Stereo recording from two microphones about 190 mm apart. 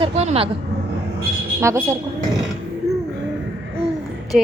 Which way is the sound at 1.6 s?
15° right (ahead or behind).